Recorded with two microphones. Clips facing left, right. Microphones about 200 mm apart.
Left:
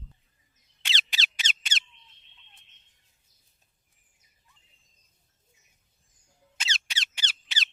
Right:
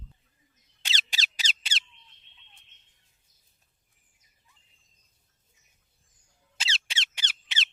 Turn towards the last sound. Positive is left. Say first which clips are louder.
# even
turn(degrees=-20)  # may be behind; listen again after turning